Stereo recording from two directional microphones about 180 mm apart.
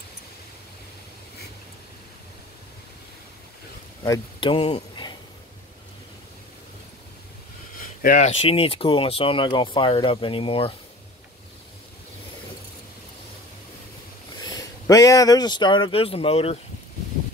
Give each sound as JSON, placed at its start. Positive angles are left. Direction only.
{"t": 4.4, "sound": "speech", "side_deg": 30}
{"t": 7.8, "sound": "speech", "side_deg": 50}
{"t": 14.4, "sound": "speech", "side_deg": 20}